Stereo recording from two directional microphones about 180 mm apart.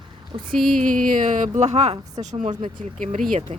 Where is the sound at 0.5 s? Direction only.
Centre (ahead or behind).